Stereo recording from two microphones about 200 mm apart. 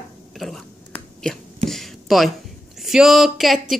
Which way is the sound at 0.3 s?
Centre (ahead or behind).